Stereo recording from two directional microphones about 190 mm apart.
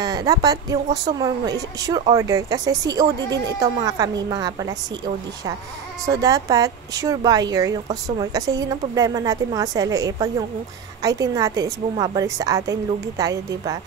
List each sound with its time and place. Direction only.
0.0 s a woman's voice: 20° right (ahead or behind)